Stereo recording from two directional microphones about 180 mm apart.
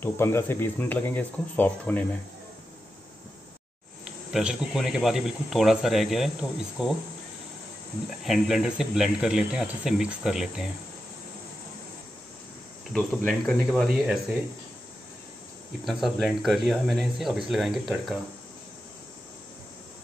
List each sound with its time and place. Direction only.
0.0 s speech: 15° left (ahead or behind)
4.0 s speech: 5° right (ahead or behind)
8.2 s speech: centre (ahead or behind)
12.9 s speech: centre (ahead or behind)
15.8 s speech: centre (ahead or behind)